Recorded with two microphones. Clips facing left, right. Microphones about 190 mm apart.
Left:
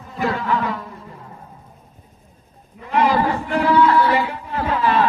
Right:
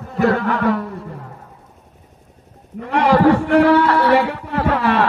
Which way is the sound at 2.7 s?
65° right (ahead or behind).